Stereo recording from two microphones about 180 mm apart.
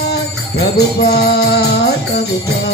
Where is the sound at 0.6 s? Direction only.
65° left (ahead or behind).